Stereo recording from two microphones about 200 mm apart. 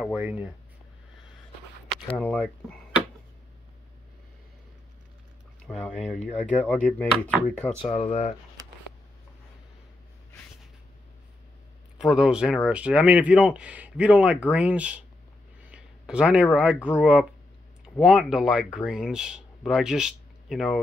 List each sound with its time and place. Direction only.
0.0 s speech: 5° right (ahead or behind)
2.1 s speech: 5° left (ahead or behind)
5.7 s speech: 5° left (ahead or behind)
7.8 s speech: 30° left (ahead or behind)
12.0 s speech: 5° right (ahead or behind)
15.6 s a sound: 5° right (ahead or behind)
16.5 s speech: 5° right (ahead or behind)